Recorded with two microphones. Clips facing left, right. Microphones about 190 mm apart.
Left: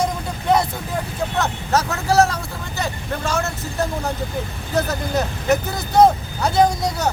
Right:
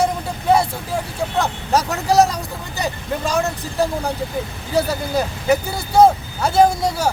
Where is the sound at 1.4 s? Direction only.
15° right (ahead or behind).